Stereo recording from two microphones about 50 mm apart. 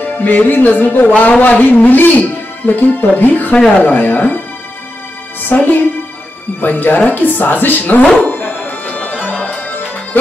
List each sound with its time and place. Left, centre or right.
0.0 s speech: left
5.4 s speech: left
8.2 s music: left